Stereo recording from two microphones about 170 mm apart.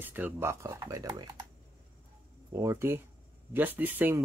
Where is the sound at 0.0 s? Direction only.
10° right (ahead or behind).